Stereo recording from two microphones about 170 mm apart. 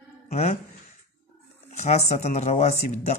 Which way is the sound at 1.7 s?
40° left (ahead or behind).